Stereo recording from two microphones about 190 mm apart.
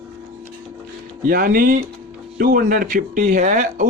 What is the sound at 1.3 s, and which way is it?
Speech, 45° right (ahead or behind).